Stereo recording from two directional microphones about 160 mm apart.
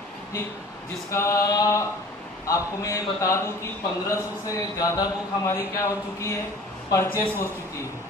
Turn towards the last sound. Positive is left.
turn(degrees=15)  # may be behind; listen again after turning